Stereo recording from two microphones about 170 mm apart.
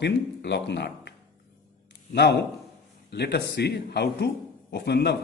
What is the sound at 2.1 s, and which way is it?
A man's voice, 80° left.